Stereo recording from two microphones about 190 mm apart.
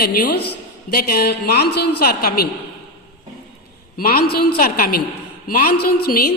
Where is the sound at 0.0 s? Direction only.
55° left (ahead or behind).